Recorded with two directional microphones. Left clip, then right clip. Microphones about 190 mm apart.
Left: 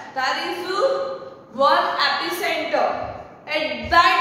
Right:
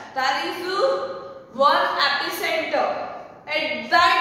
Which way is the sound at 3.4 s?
15° left (ahead or behind).